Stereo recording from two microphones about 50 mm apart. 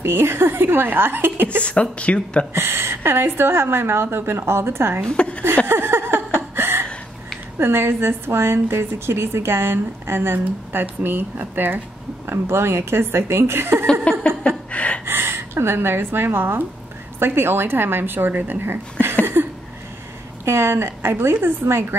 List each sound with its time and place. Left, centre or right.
0.0 s a woman's voice: right
1.6 s speech: left
2.5 s a woman's voice: right
5.0 s speech: left
5.7 s a sound: right
7.5 s a woman's voice: right
12.3 s a woman's voice: right
14.1 s a sound: left
15.0 s a sound: right
15.5 s a woman's voice: right
19.4 s a sound: right
20.4 s a woman's voice: right